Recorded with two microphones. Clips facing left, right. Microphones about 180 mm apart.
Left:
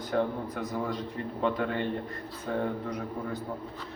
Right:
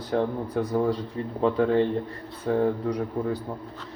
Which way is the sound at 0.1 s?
30° right (ahead or behind).